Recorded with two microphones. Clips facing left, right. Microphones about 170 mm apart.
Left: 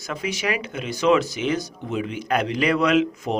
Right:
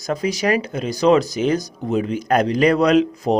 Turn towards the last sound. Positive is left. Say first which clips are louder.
# right 4 dB
turn(degrees=-40)  # may be behind; listen again after turning